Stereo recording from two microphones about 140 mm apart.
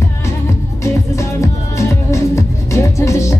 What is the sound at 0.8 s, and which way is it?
Music, 20° left (ahead or behind).